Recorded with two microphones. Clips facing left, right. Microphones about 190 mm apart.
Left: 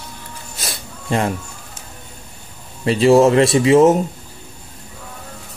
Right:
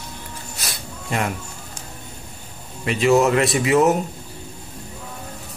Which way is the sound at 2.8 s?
30° left (ahead or behind).